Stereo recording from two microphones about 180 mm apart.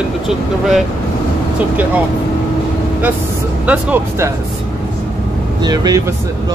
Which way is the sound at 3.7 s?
10° right (ahead or behind).